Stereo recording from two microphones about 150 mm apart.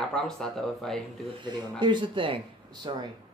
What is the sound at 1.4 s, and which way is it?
Speech, 30° right (ahead or behind).